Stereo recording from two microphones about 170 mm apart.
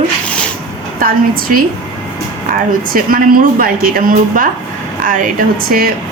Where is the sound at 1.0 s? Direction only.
60° right (ahead or behind).